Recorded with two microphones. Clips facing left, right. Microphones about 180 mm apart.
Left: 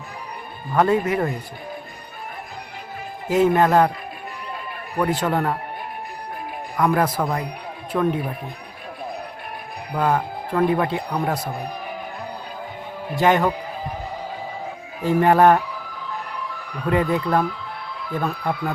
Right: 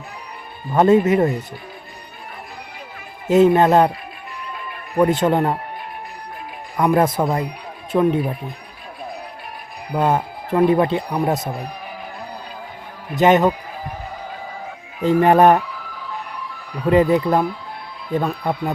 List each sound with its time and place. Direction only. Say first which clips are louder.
0.7 s speech: right 5 dB; 25° right (ahead or behind)
3.2 s speech: right 4 dB; 25° right (ahead or behind)
4.9 s speech: right 5 dB; 25° right (ahead or behind)
6.7 s speech: right 3 dB; 25° right (ahead or behind)
9.9 s speech: right 2 dB; 25° right (ahead or behind)
13.1 s speech: right 4 dB; 20° right (ahead or behind)
15.0 s speech: right 2 dB; 20° right (ahead or behind)
16.8 s speech: right 6 dB; 20° right (ahead or behind)